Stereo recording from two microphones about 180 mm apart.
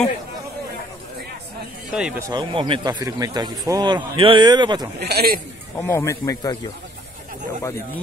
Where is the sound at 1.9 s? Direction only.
5° right (ahead or behind).